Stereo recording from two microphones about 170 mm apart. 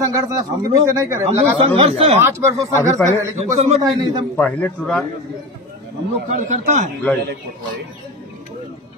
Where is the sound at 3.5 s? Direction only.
40° right (ahead or behind).